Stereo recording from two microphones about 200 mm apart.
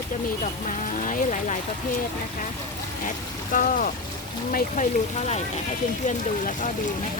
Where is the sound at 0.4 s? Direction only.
40° left (ahead or behind).